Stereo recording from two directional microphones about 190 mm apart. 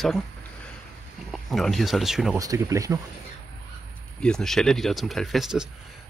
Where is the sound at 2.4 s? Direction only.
15° right (ahead or behind).